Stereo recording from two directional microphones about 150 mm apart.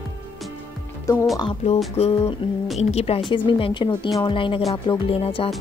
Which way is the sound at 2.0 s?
40° left (ahead or behind).